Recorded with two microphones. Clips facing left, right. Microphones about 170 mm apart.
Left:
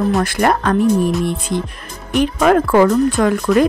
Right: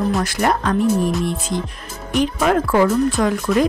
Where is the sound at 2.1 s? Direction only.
60° left (ahead or behind).